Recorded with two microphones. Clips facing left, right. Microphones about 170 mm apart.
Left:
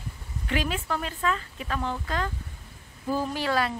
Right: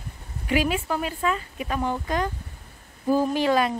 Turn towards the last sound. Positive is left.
turn(degrees=-20)  # may be behind; listen again after turning